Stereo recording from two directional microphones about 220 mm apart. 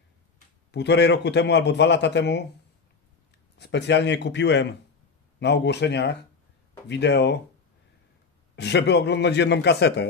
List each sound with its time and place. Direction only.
0.7 s a man's voice: 50° left (ahead or behind)
3.5 s a man's voice: 50° left (ahead or behind)
8.5 s a man's voice: 50° left (ahead or behind)